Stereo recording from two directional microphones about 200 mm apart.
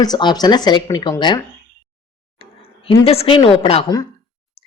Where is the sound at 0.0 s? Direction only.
20° left (ahead or behind).